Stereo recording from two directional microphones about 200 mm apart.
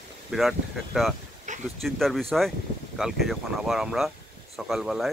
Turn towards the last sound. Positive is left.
turn(degrees=0)  # may be behind; listen again after turning